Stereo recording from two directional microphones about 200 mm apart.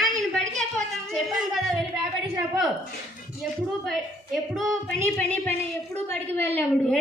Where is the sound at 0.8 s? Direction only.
Centre (ahead or behind).